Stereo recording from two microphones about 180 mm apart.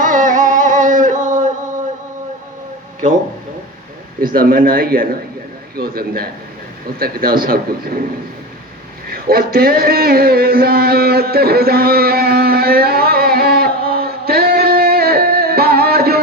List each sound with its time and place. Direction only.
0.0 s music: 45° right (ahead or behind)
4.2 s speech: 55° right (ahead or behind)
9.0 s a sound: 55° right (ahead or behind)